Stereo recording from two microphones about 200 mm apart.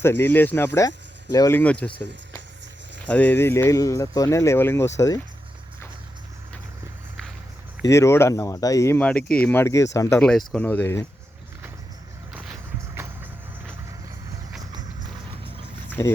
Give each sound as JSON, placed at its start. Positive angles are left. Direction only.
{"t": 0.0, "sound": "speech", "side_deg": 10}
{"t": 3.1, "sound": "speech", "side_deg": 5}
{"t": 7.9, "sound": "speech", "side_deg": 15}
{"t": 10.2, "sound": "speech", "side_deg": 5}
{"t": 12.3, "sound": "music", "side_deg": -5}
{"t": 15.4, "sound": "a sound", "side_deg": 10}